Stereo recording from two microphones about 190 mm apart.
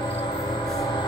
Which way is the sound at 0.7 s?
15° left (ahead or behind).